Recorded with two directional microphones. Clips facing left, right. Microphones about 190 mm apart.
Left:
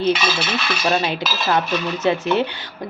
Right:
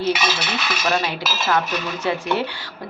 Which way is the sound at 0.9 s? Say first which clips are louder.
Left 2 dB; 25° left (ahead or behind).